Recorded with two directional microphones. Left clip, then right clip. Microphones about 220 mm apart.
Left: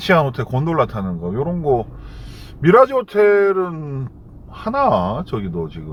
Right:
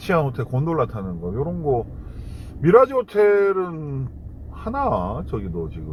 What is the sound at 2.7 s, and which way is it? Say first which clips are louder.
Speech: left 3 dB; 15° left (ahead or behind).